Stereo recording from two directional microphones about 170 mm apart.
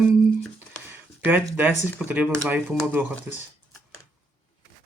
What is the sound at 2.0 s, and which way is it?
Speech, 10° right (ahead or behind).